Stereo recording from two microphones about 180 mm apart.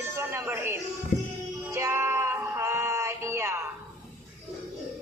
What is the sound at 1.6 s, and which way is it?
Female singing, 15° right (ahead or behind).